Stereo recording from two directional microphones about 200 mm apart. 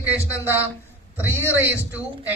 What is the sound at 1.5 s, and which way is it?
Speech, 10° right (ahead or behind).